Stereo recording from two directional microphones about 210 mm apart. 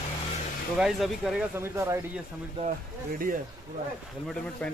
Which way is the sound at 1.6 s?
15° right (ahead or behind).